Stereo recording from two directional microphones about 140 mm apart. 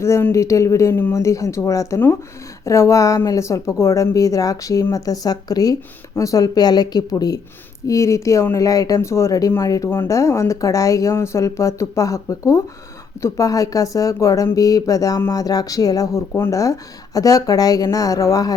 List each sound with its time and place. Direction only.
0.0 s speech: 20° left (ahead or behind)